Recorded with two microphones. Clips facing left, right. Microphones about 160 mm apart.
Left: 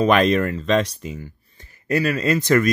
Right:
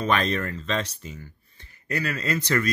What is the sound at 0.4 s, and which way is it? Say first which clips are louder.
Speech: left 9 dB; 55° left (ahead or behind).